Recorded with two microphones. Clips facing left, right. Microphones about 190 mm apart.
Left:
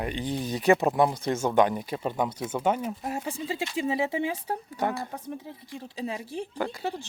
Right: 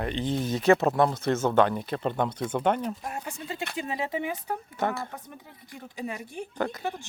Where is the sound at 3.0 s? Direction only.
25° left (ahead or behind).